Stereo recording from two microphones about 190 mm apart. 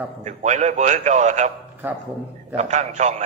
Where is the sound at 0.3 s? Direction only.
40° right (ahead or behind).